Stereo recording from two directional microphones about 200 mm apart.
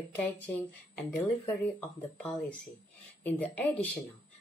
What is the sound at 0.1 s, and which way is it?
Speech, 10° left (ahead or behind).